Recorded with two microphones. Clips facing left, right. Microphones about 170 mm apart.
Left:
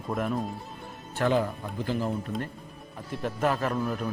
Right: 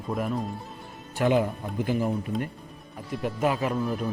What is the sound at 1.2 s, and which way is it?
Speech, 15° right (ahead or behind).